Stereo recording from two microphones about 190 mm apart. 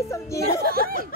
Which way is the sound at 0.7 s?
50° right (ahead or behind).